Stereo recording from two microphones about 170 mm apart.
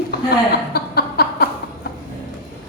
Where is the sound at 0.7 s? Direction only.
65° left (ahead or behind).